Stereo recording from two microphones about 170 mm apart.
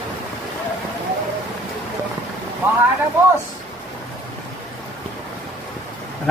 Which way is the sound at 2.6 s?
10° right (ahead or behind).